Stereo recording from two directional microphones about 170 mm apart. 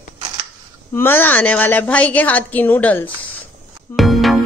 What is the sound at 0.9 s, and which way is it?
A woman's voice, 15° left (ahead or behind).